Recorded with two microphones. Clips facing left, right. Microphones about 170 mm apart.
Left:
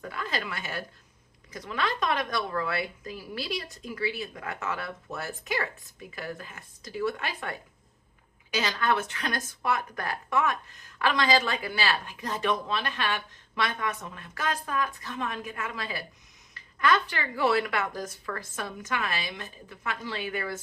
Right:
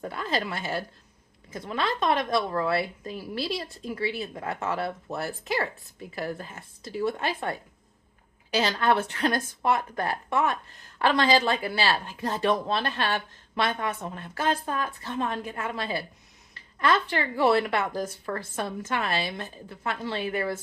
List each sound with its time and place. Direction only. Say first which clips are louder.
0.0 s speech: right 4 dB; 30° right (ahead or behind)